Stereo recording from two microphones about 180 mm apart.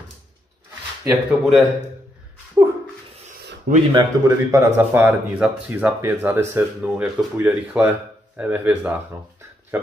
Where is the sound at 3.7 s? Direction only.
60° right (ahead or behind).